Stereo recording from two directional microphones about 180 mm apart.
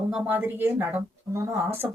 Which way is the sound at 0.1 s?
10° right (ahead or behind).